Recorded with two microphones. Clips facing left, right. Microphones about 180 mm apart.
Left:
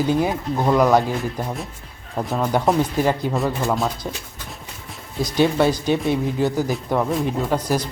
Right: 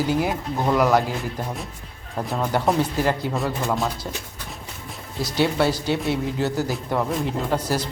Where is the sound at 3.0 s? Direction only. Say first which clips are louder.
Left 3 dB; 15° left (ahead or behind).